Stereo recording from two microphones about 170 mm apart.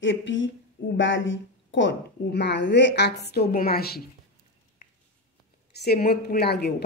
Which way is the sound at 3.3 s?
65° left (ahead or behind).